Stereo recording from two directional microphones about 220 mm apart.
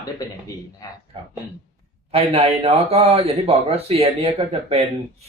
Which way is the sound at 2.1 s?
25° right (ahead or behind).